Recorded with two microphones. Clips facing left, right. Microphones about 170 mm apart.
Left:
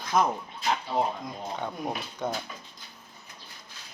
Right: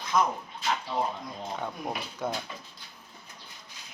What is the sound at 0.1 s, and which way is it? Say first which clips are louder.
Speech: left 1 dB; 45° left (ahead or behind).